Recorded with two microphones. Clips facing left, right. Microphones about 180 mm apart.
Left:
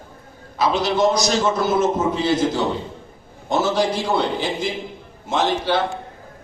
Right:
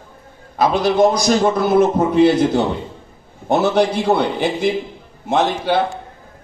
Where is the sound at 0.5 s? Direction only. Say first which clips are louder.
Right 4 dB; 55° right (ahead or behind).